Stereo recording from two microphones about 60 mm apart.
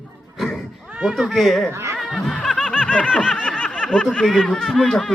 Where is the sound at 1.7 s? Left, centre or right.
Right.